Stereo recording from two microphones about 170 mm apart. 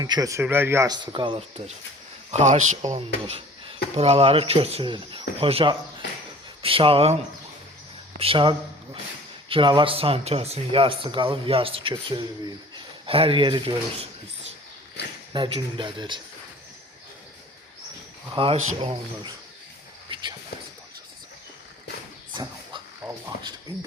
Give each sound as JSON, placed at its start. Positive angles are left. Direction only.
{"t": 0.0, "sound": "speech", "side_deg": -20}
{"t": 1.1, "sound": "speech", "side_deg": -30}
{"t": 3.2, "sound": "a sound", "side_deg": -35}
{"t": 3.9, "sound": "speech", "side_deg": -35}
{"t": 8.2, "sound": "speech", "side_deg": -30}
{"t": 15.3, "sound": "a man's voice", "side_deg": -30}
{"t": 18.3, "sound": "speech", "side_deg": -30}
{"t": 20.1, "sound": "a sound", "side_deg": -30}
{"t": 23.0, "sound": "speech", "side_deg": -15}